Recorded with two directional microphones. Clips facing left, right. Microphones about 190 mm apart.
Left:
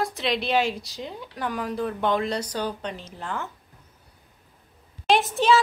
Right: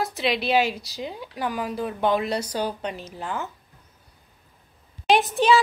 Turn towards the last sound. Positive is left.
turn(degrees=0)  # may be behind; listen again after turning